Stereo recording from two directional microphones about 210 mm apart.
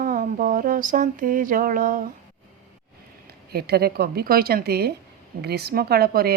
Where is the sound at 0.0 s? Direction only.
40° right (ahead or behind).